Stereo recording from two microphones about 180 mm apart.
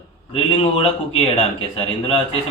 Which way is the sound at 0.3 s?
30° left (ahead or behind).